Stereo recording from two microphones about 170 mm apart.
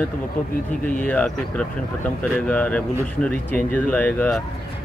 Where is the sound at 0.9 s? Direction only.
5° left (ahead or behind).